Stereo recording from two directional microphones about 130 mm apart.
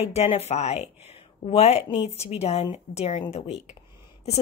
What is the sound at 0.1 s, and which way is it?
A woman's voice, 55° left (ahead or behind).